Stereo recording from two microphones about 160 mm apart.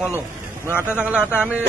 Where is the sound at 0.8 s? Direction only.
5° right (ahead or behind).